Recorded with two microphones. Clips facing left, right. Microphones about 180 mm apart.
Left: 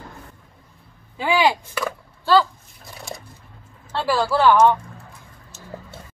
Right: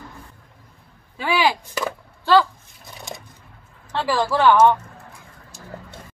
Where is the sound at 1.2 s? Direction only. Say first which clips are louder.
Left 2 dB; 10° left (ahead or behind).